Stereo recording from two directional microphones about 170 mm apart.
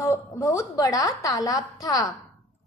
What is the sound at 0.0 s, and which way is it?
A woman's voice, 20° left (ahead or behind).